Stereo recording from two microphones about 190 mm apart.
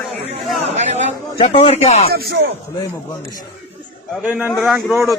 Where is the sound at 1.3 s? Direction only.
30° left (ahead or behind).